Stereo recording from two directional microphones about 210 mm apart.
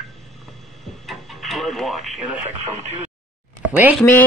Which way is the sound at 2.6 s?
35° right (ahead or behind).